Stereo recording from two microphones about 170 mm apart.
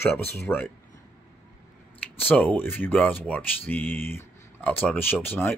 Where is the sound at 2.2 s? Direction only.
Centre (ahead or behind).